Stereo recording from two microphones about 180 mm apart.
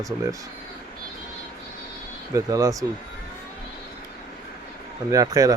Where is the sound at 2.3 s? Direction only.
20° right (ahead or behind).